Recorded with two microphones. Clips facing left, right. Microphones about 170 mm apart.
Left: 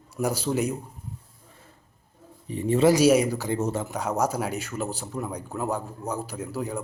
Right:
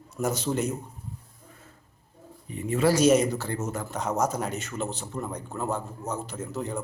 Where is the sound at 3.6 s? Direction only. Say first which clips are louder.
Left 5 dB; 30° left (ahead or behind).